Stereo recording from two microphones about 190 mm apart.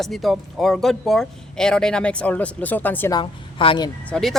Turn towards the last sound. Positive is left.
turn(degrees=0)  # may be behind; listen again after turning